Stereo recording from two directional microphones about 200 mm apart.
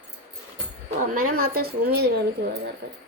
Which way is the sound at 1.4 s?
50° right (ahead or behind).